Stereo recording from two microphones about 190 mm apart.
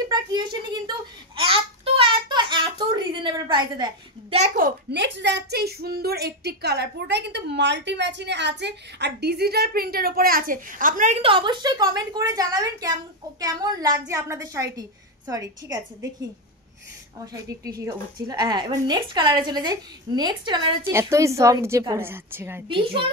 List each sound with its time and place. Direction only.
0.1 s a sound: 20° right (ahead or behind)
4.4 s a child's voice: 50° right (ahead or behind)
5.0 s a woman's voice: 65° right (ahead or behind); by 16.1 s 20° right (ahead or behind)
17.3 s a woman's voice: 20° right (ahead or behind)
22.7 s speech: 25° right (ahead or behind)